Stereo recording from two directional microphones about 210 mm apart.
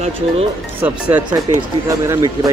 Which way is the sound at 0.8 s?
5° right (ahead or behind).